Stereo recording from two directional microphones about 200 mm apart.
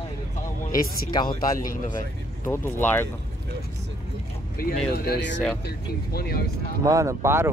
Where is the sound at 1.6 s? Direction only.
45° left (ahead or behind).